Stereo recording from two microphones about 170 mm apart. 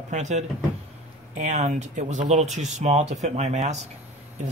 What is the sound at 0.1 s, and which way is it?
Speech, 45° right (ahead or behind).